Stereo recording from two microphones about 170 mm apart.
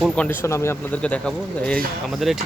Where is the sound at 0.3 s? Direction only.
15° left (ahead or behind).